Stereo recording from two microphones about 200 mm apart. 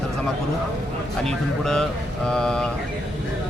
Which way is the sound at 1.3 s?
5° left (ahead or behind).